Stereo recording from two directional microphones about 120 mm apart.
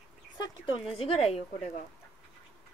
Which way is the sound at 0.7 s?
50° left (ahead or behind).